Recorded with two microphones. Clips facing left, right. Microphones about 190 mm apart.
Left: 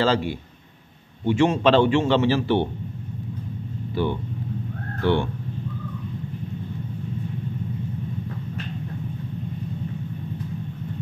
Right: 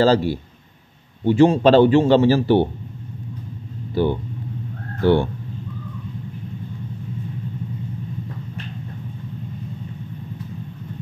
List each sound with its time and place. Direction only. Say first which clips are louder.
0.0 s a man's voice: right 5 dB; 40° right (ahead or behind)
3.9 s a man's voice: right 5 dB; 40° right (ahead or behind)